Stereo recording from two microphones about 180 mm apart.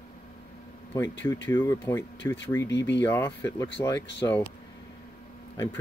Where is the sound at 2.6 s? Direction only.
75° left (ahead or behind).